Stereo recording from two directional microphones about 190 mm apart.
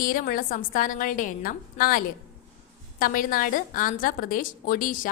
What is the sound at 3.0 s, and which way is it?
A woman's voice, 45° left (ahead or behind).